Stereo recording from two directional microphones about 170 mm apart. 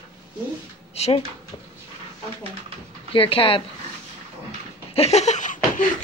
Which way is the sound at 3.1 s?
30° left (ahead or behind).